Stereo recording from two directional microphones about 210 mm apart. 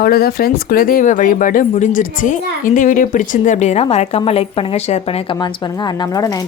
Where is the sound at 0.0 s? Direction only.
45° left (ahead or behind).